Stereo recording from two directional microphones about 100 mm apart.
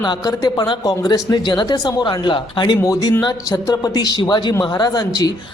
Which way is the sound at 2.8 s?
35° left (ahead or behind).